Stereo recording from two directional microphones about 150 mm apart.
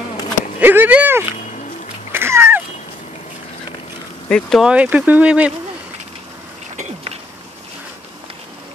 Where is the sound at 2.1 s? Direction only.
15° right (ahead or behind).